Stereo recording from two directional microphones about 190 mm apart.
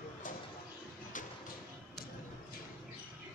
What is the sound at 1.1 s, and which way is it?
Music, 45° left (ahead or behind).